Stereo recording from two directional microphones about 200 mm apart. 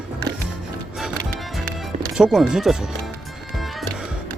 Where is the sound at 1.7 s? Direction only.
Centre (ahead or behind).